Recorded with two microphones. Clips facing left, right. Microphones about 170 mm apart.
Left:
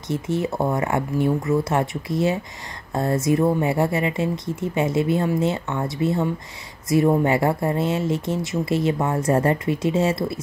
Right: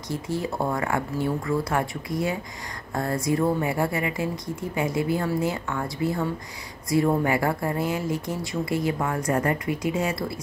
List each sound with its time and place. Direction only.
0.1 s speech: 20° left (ahead or behind)